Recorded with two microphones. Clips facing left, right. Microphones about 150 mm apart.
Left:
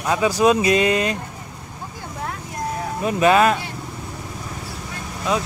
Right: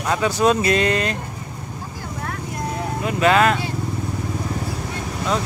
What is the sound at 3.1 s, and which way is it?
Speech, 20° left (ahead or behind).